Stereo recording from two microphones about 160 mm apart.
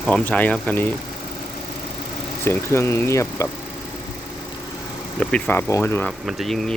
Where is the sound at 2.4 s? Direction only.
15° left (ahead or behind).